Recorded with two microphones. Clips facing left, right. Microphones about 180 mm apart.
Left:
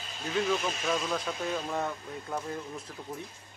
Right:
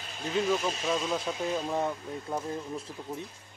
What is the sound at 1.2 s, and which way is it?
Speech, 10° right (ahead or behind).